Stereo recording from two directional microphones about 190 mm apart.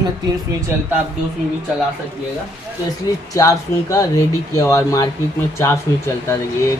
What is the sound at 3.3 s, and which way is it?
Speech, 15° left (ahead or behind).